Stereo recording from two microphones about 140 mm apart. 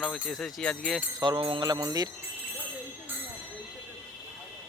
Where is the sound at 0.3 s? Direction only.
Centre (ahead or behind).